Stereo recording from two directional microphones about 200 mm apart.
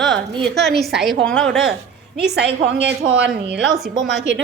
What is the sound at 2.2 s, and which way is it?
A woman's voice, 55° right (ahead or behind).